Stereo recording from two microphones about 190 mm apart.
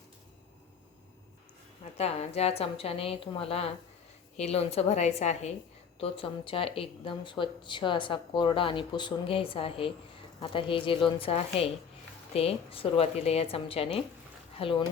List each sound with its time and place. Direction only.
1.8 s a woman's voice: 35° left (ahead or behind)